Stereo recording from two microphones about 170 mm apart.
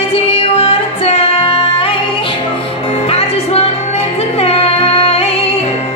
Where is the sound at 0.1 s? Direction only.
35° left (ahead or behind).